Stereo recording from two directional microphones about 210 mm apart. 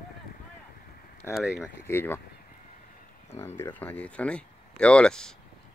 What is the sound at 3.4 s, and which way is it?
Speech, 10° left (ahead or behind).